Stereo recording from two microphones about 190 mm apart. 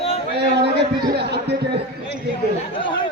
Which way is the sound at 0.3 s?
60° right (ahead or behind).